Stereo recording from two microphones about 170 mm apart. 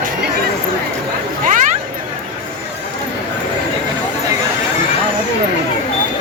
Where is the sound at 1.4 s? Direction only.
50° right (ahead or behind).